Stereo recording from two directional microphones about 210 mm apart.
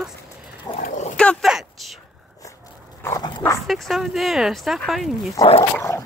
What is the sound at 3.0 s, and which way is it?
Speech, 20° left (ahead or behind).